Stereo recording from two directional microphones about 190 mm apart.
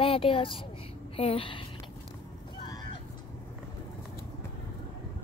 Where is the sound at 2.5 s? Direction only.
20° left (ahead or behind).